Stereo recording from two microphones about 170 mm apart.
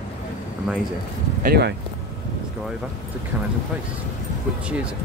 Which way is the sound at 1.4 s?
70° right (ahead or behind).